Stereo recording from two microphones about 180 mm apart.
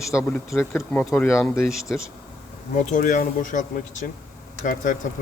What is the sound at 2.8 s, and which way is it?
Speech, 45° left (ahead or behind).